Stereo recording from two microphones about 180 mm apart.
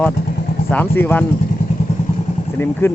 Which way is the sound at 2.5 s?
10° left (ahead or behind).